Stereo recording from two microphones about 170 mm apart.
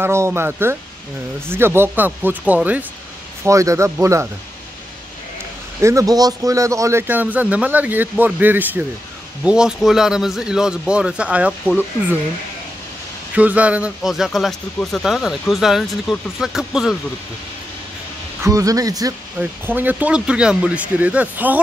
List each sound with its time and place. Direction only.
0.0 s speech: 15° right (ahead or behind)
5.8 s a man's voice: 15° right (ahead or behind)
13.3 s a man's voice: 10° right (ahead or behind)
18.4 s a man's voice: 20° right (ahead or behind)